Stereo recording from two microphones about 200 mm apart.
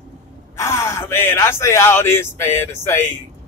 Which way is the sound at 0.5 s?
15° left (ahead or behind).